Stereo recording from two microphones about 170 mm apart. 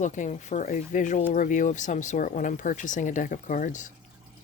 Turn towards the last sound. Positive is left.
turn(degrees=50)  # may be behind; listen again after turning